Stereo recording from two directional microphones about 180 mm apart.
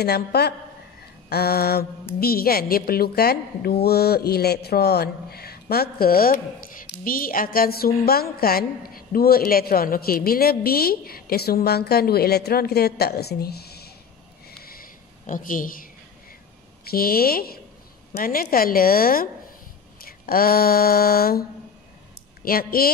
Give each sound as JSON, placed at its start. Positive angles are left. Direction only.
{"t": 0.0, "sound": "a woman's voice", "side_deg": 65}
{"t": 14.6, "sound": "a sound", "side_deg": 55}
{"t": 16.9, "sound": "a woman's voice", "side_deg": 55}